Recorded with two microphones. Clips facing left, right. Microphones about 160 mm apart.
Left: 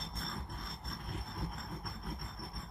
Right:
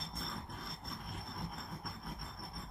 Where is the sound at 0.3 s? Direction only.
Centre (ahead or behind).